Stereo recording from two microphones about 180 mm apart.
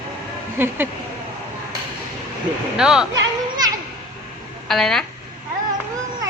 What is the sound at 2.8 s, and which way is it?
Speech, 5° right (ahead or behind).